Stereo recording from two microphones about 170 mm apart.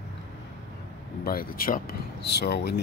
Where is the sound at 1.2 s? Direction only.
60° left (ahead or behind).